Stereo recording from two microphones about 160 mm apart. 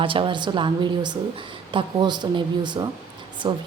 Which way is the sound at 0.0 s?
30° right (ahead or behind).